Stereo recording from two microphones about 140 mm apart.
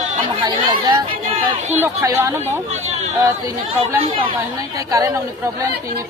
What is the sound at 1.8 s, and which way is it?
Speech, 20° right (ahead or behind).